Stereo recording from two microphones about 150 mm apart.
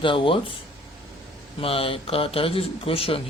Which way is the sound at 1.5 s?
40° left (ahead or behind).